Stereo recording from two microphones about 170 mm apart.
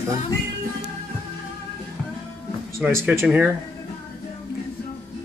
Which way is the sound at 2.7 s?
10° right (ahead or behind).